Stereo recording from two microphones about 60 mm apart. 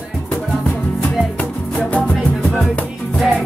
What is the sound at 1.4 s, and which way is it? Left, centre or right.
Music, centre.